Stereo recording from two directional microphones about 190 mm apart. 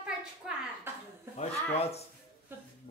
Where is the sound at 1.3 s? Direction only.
35° left (ahead or behind).